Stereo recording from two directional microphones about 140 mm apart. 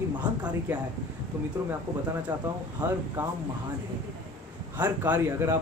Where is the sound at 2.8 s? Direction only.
15° right (ahead or behind).